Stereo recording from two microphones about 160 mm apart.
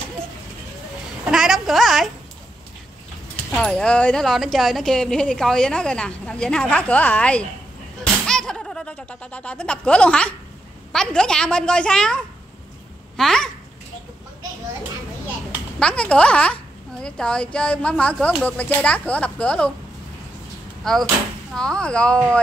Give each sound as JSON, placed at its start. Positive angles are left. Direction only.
{"t": 1.3, "sound": "a sound", "side_deg": -5}
{"t": 3.5, "sound": "speech", "side_deg": 5}
{"t": 15.8, "sound": "speech", "side_deg": 5}
{"t": 20.8, "sound": "speech", "side_deg": 0}